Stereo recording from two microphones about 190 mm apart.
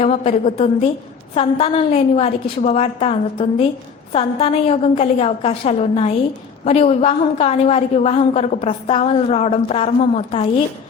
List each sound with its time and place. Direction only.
0.0 s a woman's voice: 35° left (ahead or behind)